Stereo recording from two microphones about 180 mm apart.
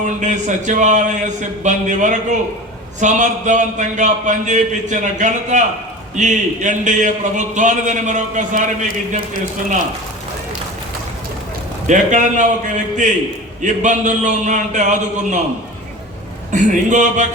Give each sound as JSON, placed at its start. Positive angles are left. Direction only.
{"t": 0.0, "sound": "a man's voice", "side_deg": -40}
{"t": 11.9, "sound": "a man's voice", "side_deg": -45}
{"t": 16.5, "sound": "a man's voice", "side_deg": -40}